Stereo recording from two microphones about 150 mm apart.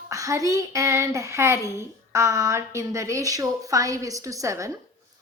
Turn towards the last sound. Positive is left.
turn(degrees=-20)  # may be behind; listen again after turning